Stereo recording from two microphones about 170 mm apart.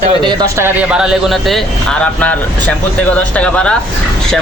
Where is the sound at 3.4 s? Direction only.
5° left (ahead or behind).